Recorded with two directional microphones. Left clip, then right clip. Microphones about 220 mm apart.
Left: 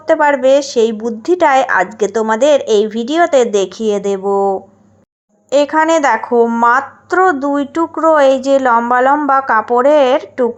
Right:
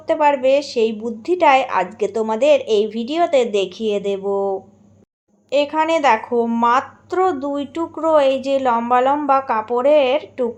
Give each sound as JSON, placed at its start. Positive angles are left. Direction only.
{"t": 0.1, "sound": "speech", "side_deg": 20}